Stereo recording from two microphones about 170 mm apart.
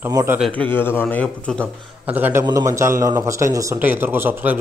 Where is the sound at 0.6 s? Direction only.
10° left (ahead or behind).